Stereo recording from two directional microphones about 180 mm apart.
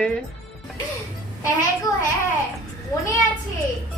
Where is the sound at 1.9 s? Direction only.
20° left (ahead or behind).